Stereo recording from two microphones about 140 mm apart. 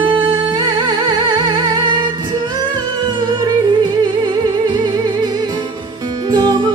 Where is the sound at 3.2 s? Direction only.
30° right (ahead or behind).